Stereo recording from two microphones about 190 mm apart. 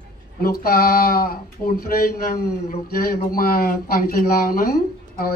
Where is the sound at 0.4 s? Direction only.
50° left (ahead or behind).